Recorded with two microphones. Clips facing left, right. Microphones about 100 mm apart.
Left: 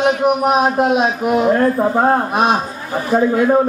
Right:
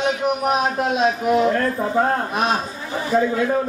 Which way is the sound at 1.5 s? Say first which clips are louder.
Left 6 dB; 35° left (ahead or behind).